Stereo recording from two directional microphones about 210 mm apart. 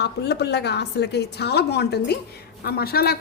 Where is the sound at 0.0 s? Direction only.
50° left (ahead or behind).